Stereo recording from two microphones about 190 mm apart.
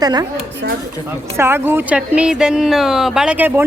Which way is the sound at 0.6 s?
65° right (ahead or behind).